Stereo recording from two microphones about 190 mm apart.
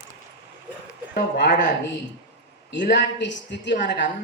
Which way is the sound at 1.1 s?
50° left (ahead or behind).